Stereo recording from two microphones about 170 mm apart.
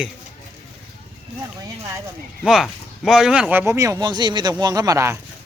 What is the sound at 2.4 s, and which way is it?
Speech, 5° right (ahead or behind).